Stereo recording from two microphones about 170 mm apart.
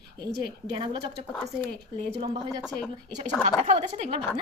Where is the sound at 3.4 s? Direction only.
40° right (ahead or behind).